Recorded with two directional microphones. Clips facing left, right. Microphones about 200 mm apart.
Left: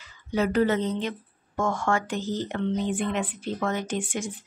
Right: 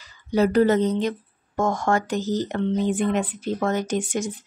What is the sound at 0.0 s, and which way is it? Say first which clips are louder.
Speech: right 5 dB; 35° right (ahead or behind).